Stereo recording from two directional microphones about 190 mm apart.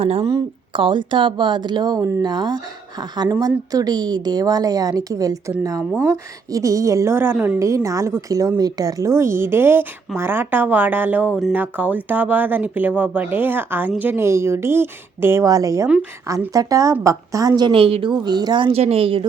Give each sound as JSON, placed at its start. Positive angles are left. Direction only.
{"t": 0.0, "sound": "a woman's voice", "side_deg": -30}